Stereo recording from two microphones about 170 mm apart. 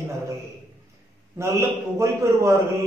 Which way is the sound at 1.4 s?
15° right (ahead or behind).